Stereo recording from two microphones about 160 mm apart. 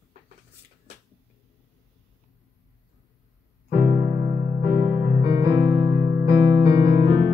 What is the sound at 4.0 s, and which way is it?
Electric piano, 25° right (ahead or behind).